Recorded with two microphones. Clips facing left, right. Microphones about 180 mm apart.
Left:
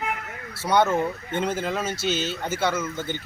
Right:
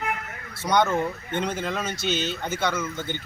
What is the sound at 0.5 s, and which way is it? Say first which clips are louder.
Speech: left 1 dB; 5° left (ahead or behind).